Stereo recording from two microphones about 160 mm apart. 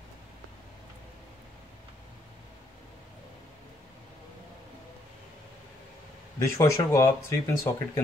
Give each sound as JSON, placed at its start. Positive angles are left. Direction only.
{"t": 6.4, "sound": "a man's voice", "side_deg": 20}